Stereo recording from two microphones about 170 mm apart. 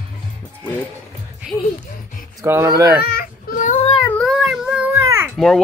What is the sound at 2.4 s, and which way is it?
Speech, 15° right (ahead or behind).